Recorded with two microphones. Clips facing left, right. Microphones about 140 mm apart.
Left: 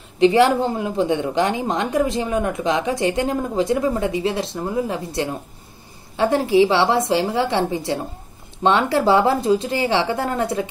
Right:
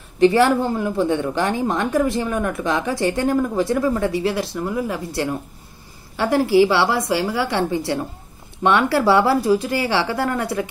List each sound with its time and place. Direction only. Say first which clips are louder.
0.2 s a woman's voice: even; 20° left (ahead or behind)